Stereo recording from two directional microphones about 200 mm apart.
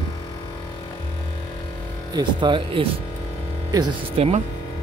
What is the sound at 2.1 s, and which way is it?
Speech, 25° right (ahead or behind).